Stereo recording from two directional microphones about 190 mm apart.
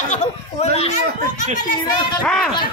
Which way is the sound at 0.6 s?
35° left (ahead or behind).